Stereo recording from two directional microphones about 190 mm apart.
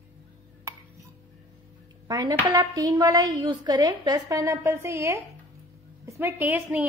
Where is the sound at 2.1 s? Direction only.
20° right (ahead or behind).